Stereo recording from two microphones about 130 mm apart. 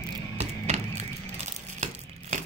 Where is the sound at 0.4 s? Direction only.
60° right (ahead or behind).